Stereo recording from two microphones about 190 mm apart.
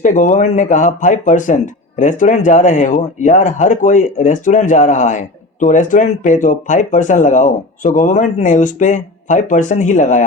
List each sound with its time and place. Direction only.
0.0 s speech: 40° left (ahead or behind)